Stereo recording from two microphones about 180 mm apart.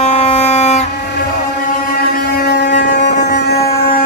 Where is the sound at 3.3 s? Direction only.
65° left (ahead or behind).